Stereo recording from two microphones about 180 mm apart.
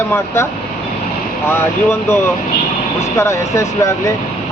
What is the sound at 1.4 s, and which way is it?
Speech, 15° left (ahead or behind).